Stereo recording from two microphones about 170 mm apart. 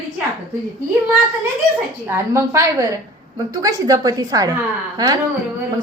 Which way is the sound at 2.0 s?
15° right (ahead or behind).